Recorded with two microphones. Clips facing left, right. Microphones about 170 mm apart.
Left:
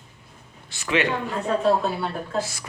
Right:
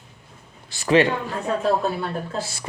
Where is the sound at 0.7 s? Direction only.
35° right (ahead or behind).